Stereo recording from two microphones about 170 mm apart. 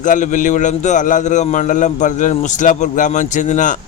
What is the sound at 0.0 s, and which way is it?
Speech, 50° left (ahead or behind).